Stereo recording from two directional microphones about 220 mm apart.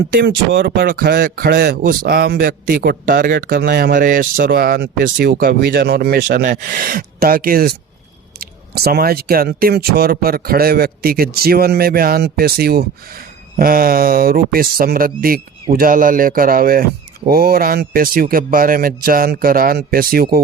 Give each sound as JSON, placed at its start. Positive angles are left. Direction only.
{"t": 0.1, "sound": "speech", "side_deg": -50}